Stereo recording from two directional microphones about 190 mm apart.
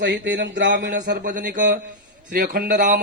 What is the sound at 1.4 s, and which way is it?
Speech, 45° right (ahead or behind).